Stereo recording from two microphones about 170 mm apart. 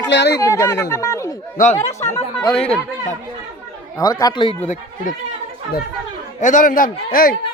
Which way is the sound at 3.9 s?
20° left (ahead or behind).